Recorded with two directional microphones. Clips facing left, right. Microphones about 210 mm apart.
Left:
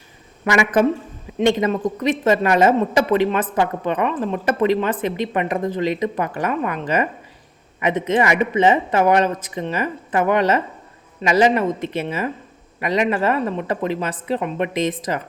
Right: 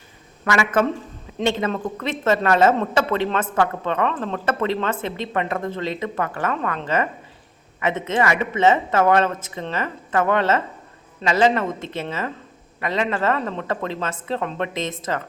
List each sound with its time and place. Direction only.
0.5 s a woman's voice: 15° left (ahead or behind)